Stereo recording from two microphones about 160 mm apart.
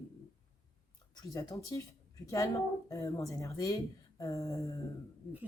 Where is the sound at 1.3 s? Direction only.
20° left (ahead or behind).